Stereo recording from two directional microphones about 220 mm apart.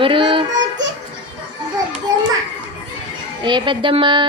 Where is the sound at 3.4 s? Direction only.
20° right (ahead or behind).